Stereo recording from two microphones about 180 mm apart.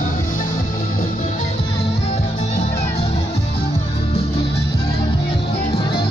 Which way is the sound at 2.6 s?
40° left (ahead or behind).